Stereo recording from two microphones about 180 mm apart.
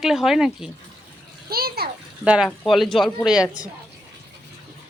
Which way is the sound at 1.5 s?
60° right (ahead or behind).